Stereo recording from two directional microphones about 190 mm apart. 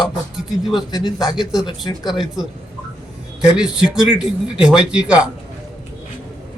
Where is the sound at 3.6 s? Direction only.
5° right (ahead or behind).